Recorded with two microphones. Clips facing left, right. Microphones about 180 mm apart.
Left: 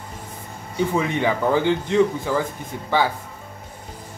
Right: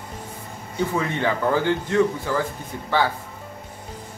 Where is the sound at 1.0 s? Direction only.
15° left (ahead or behind).